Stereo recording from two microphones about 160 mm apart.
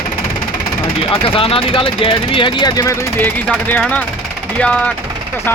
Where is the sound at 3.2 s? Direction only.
10° left (ahead or behind).